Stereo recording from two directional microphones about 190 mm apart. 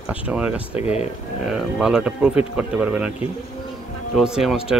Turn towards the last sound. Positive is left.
turn(degrees=0)  # may be behind; listen again after turning